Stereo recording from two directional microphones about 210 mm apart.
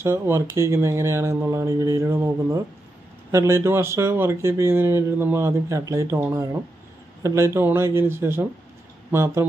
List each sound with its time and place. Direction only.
0.0 s speech: 10° right (ahead or behind)